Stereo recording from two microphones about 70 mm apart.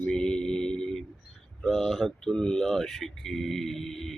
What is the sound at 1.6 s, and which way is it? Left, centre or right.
A man's voice, centre.